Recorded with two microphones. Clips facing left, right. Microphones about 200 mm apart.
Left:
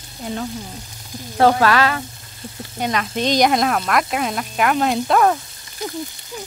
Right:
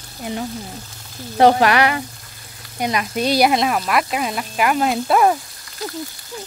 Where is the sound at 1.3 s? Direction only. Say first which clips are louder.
Right 1 dB; 20° right (ahead or behind).